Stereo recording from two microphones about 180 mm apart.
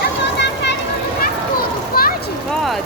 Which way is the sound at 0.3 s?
70° left (ahead or behind).